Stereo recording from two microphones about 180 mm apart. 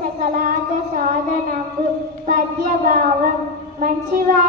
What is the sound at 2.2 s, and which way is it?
Child singing, 45° right (ahead or behind).